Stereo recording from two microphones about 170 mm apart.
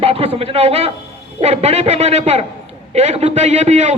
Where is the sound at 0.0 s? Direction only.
35° right (ahead or behind).